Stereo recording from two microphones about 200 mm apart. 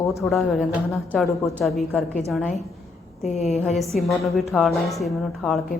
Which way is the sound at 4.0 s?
Centre (ahead or behind).